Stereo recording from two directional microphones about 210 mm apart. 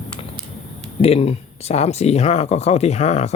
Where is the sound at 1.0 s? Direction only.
30° left (ahead or behind).